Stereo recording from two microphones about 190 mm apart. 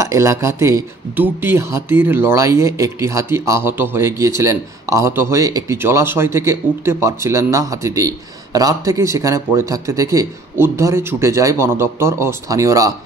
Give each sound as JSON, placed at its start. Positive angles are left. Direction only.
{"t": 0.0, "sound": "speech", "side_deg": -15}